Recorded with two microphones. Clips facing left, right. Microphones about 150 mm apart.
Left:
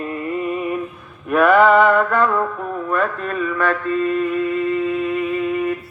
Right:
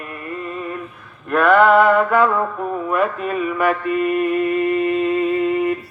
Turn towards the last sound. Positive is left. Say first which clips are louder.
# right 2 dB
turn(degrees=-25)  # may be behind; listen again after turning